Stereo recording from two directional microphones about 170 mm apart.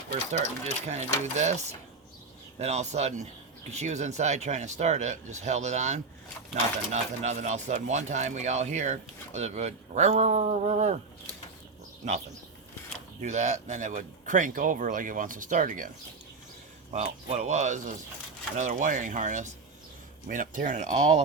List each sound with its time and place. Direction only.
0.9 s speech: 40° right (ahead or behind)
2.6 s speech: 40° right (ahead or behind)
13.2 s speech: 45° right (ahead or behind)
16.9 s speech: 40° right (ahead or behind)